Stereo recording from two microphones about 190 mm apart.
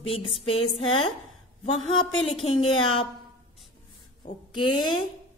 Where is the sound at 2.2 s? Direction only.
30° left (ahead or behind).